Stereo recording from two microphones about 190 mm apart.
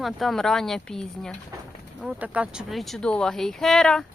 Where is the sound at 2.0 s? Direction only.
10° right (ahead or behind).